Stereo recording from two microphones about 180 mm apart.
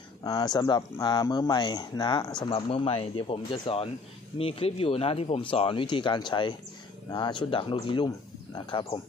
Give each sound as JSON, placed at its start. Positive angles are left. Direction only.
{"t": 0.2, "sound": "speech", "side_deg": 20}